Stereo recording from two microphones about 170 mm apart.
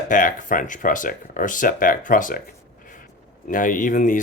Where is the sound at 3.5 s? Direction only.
50° left (ahead or behind).